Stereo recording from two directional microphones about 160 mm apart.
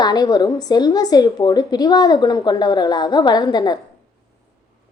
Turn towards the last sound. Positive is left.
turn(degrees=25)  # may be behind; listen again after turning